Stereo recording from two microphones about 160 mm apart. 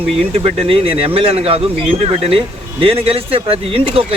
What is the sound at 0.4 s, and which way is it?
Speech, 35° right (ahead or behind).